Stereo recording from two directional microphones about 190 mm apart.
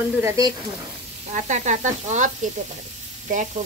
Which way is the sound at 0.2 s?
15° right (ahead or behind).